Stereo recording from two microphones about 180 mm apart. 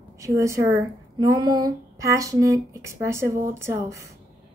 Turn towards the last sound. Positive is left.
turn(degrees=-15)  # may be behind; listen again after turning